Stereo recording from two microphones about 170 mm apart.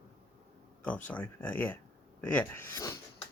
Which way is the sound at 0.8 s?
10° left (ahead or behind).